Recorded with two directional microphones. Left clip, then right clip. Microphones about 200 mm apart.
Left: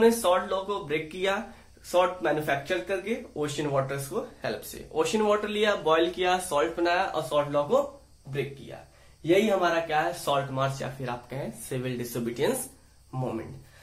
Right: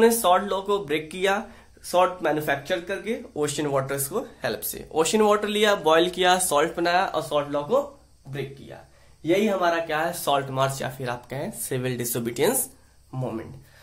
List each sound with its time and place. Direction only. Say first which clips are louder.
0.0 s speech: right 3 dB; 50° right (ahead or behind)
9.2 s speech: right 1 dB; 40° right (ahead or behind)